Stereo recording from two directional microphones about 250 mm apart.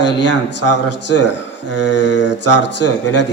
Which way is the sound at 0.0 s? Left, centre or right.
Left.